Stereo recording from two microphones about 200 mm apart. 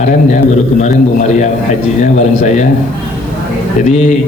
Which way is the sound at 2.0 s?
35° left (ahead or behind).